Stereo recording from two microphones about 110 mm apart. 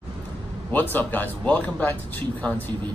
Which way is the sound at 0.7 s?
15° left (ahead or behind).